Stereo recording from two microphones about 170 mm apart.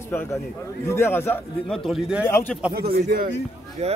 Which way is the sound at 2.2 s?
15° left (ahead or behind).